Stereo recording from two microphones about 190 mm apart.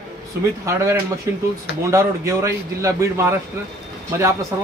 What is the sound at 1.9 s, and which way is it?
A man's voice, 15° right (ahead or behind).